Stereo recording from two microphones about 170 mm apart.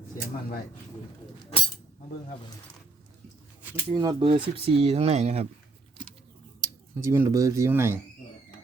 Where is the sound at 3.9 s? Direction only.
25° right (ahead or behind).